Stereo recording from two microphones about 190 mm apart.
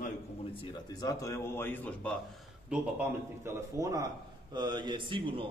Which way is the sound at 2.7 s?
10° right (ahead or behind).